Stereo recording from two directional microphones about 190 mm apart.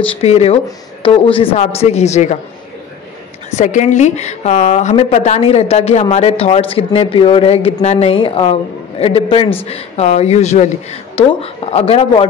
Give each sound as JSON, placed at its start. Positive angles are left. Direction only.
{"t": 0.0, "sound": "a woman's voice", "side_deg": 35}
{"t": 3.4, "sound": "a woman's voice", "side_deg": 40}